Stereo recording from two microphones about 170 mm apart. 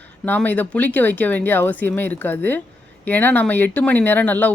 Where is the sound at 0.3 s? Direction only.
10° left (ahead or behind).